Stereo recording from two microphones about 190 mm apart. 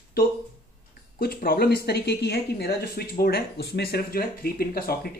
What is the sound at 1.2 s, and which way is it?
Speech, 50° left (ahead or behind).